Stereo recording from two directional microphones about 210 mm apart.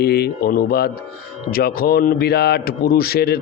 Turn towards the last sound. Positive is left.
turn(degrees=50)  # may be behind; listen again after turning